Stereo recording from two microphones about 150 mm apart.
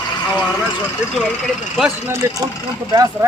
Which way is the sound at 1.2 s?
Centre (ahead or behind).